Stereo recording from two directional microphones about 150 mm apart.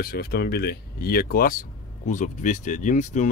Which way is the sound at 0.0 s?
90° left.